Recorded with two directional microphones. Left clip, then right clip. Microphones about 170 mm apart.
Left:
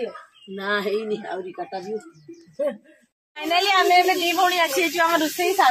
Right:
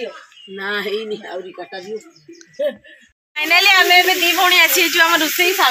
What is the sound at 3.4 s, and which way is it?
Speech, 5° right (ahead or behind).